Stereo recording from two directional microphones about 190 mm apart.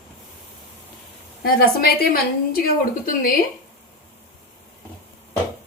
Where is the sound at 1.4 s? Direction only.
55° left (ahead or behind).